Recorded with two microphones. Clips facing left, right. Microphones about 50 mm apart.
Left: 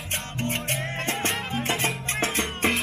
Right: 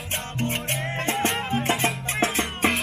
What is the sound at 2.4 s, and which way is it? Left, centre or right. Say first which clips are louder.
Music: right 1 dB; centre.